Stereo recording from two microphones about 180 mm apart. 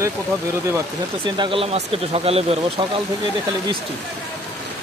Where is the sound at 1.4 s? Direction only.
30° right (ahead or behind).